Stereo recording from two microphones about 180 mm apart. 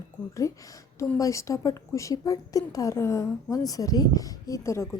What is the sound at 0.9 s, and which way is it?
A woman's voice, 15° left (ahead or behind).